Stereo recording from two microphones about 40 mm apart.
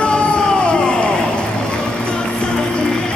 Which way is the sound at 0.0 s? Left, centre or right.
Left.